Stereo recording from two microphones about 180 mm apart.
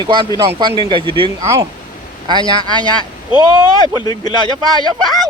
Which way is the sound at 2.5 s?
25° right (ahead or behind).